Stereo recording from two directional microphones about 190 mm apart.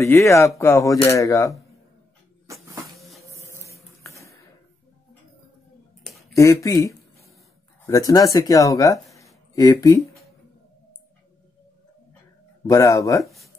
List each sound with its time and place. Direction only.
0.0 s speech: 15° left (ahead or behind)
2.9 s printer: centre (ahead or behind)
3.2 s printer: 15° left (ahead or behind)
4.0 s a sound: 15° left (ahead or behind)
6.3 s speech: 15° left (ahead or behind)
12.6 s speech: 15° left (ahead or behind)